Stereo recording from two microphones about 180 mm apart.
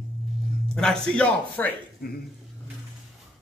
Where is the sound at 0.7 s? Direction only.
5° left (ahead or behind).